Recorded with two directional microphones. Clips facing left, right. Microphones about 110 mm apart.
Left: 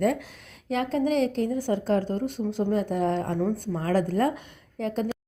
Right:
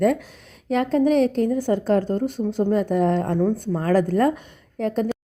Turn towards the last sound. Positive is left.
turn(degrees=-40)  # may be behind; listen again after turning